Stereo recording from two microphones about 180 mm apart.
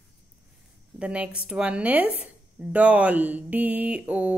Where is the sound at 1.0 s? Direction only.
5° right (ahead or behind).